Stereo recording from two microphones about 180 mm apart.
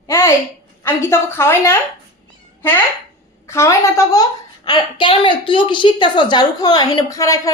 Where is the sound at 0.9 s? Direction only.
15° left (ahead or behind).